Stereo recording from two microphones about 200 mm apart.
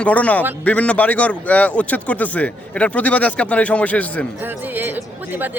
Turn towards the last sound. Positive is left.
turn(degrees=-10)  # may be behind; listen again after turning